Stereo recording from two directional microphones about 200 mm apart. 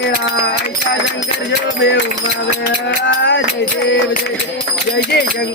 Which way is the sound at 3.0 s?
65° left (ahead or behind).